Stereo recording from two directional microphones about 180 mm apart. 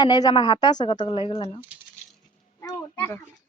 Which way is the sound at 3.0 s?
10° left (ahead or behind).